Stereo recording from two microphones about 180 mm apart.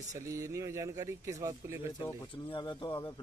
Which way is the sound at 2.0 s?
25° left (ahead or behind).